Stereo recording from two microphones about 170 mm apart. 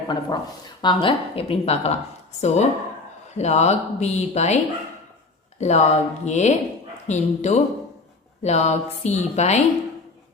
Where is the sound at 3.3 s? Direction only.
40° left (ahead or behind).